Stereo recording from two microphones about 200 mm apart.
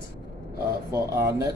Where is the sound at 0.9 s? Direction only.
15° right (ahead or behind).